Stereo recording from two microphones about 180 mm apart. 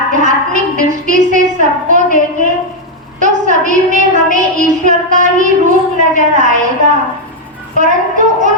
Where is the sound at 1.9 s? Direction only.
45° right (ahead or behind).